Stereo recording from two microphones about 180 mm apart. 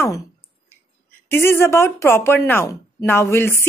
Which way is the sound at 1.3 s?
15° left (ahead or behind).